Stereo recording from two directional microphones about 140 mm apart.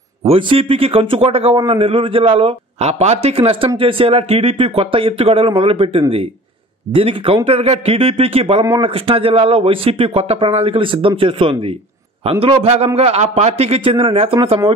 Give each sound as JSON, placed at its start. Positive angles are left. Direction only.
{"t": 0.2, "sound": "a man's voice", "side_deg": -40}